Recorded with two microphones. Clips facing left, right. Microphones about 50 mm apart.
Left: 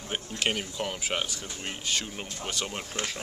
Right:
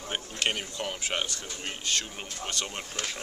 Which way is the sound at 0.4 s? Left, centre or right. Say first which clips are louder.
Left 1 dB; centre.